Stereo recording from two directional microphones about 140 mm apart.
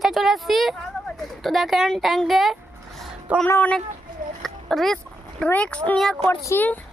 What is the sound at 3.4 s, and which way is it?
Speech, 10° left (ahead or behind).